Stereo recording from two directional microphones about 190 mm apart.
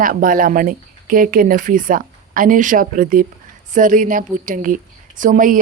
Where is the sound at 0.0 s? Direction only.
45° right (ahead or behind).